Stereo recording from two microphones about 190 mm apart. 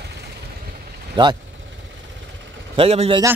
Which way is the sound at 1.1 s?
25° right (ahead or behind).